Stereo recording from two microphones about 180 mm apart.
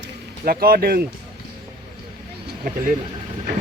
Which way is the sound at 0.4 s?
55° right (ahead or behind).